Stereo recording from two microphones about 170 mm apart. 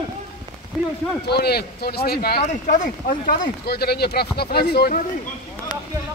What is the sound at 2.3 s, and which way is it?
Speech, 45° left (ahead or behind).